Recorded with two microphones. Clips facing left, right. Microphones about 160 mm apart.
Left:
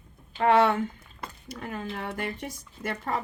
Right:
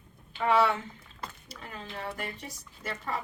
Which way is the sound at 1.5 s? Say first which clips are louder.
Left 8 dB; 55° left (ahead or behind).